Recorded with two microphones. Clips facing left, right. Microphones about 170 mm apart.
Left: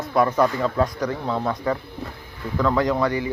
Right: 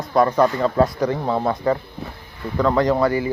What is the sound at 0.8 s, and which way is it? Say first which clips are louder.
Speech: right 4 dB; 10° right (ahead or behind).